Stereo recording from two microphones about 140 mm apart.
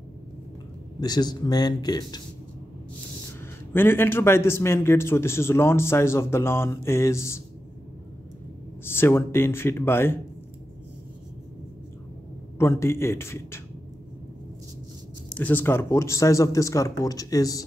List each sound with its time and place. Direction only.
1.0 s speech: 30° left (ahead or behind)
3.7 s a man's voice: 15° left (ahead or behind)
8.8 s a man's voice: 15° left (ahead or behind)
12.5 s speech: 20° left (ahead or behind)
15.2 s speech: 10° left (ahead or behind)